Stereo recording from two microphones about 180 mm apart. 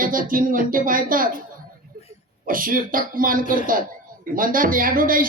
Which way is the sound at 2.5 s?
50° right (ahead or behind).